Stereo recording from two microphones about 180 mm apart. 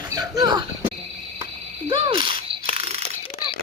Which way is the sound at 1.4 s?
30° right (ahead or behind).